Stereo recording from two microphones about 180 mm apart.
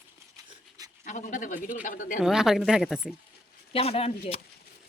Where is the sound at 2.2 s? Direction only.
5° right (ahead or behind).